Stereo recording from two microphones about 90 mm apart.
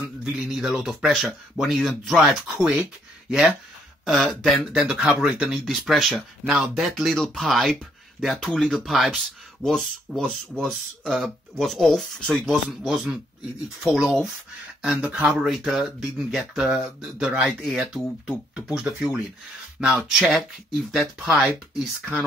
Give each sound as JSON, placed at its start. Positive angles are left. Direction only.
{"t": 0.2, "sound": "speech", "side_deg": -5}
{"t": 4.7, "sound": "speech", "side_deg": -10}
{"t": 15.2, "sound": "speech", "side_deg": -5}